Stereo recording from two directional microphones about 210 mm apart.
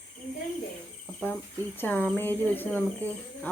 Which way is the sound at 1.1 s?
5° left (ahead or behind).